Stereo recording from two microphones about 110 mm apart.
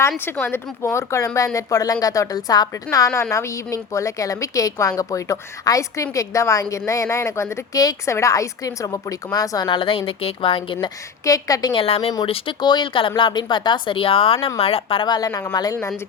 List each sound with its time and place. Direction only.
0.4 s a woman's voice: 20° left (ahead or behind)
9.6 s speech: 50° left (ahead or behind)
11.3 s a woman's voice: 35° left (ahead or behind)
11.7 s speech: 55° left (ahead or behind)
15.0 s a woman's voice: 35° left (ahead or behind)